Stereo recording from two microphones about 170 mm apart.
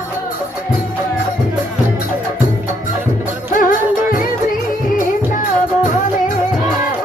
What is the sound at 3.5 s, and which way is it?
Music, 50° left (ahead or behind).